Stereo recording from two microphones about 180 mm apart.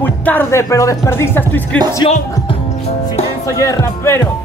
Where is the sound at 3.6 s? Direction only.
15° left (ahead or behind).